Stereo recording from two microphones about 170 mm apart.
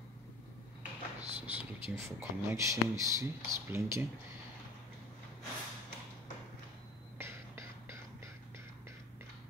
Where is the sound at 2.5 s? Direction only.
20° right (ahead or behind).